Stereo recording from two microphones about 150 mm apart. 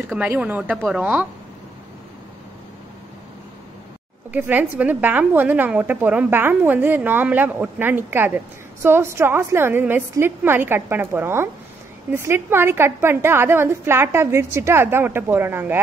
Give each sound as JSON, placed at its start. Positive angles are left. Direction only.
{"t": 0.2, "sound": "a woman's voice", "side_deg": -10}
{"t": 4.3, "sound": "a woman's voice", "side_deg": -10}